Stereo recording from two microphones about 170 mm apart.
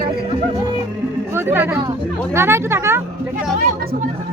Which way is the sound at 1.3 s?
15° right (ahead or behind).